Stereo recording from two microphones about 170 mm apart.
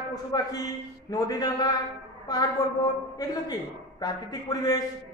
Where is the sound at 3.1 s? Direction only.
20° left (ahead or behind).